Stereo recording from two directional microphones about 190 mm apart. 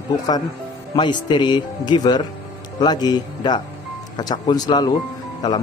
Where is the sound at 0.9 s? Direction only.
25° left (ahead or behind).